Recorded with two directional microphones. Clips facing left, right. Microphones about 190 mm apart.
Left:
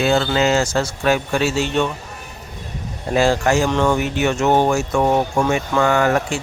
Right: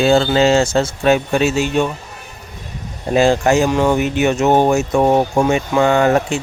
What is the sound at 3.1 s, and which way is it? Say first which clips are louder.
Speech: right 3 dB; 20° right (ahead or behind).